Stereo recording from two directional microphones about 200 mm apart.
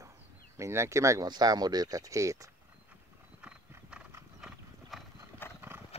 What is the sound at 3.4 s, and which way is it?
Clip-clop, 5° right (ahead or behind).